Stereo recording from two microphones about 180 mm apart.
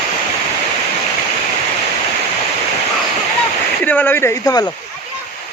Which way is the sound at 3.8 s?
10° left (ahead or behind).